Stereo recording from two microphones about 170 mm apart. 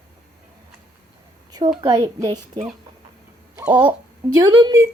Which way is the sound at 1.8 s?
25° right (ahead or behind).